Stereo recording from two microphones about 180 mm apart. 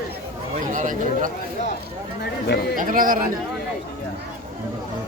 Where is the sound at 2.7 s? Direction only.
50° right (ahead or behind).